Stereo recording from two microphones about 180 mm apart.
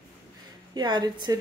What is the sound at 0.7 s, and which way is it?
Speech, 25° right (ahead or behind).